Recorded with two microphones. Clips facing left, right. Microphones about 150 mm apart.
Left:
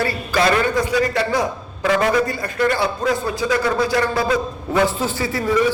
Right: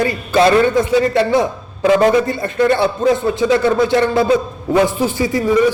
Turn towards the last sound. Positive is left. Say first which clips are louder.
# right 6 dB
turn(degrees=-15)  # may be behind; listen again after turning